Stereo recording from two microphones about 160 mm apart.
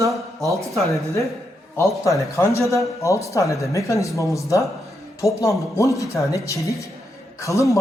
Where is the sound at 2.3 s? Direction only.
15° left (ahead or behind).